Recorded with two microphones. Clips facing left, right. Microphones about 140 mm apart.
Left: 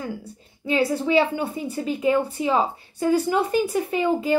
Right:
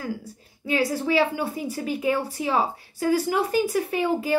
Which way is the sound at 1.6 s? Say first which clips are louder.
Left 2 dB; 5° right (ahead or behind).